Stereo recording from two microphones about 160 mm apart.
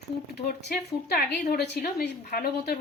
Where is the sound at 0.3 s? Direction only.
85° left.